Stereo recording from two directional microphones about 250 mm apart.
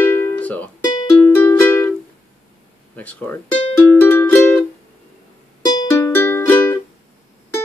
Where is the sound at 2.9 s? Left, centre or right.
Centre.